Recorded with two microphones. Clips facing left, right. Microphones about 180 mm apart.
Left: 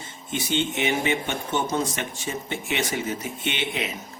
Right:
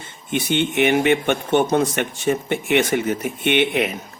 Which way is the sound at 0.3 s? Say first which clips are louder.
Right 5 dB; 60° right (ahead or behind).